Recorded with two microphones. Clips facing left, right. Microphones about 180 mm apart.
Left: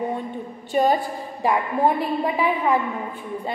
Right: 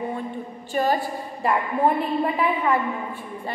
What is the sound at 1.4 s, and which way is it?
A woman's voice, 10° left (ahead or behind).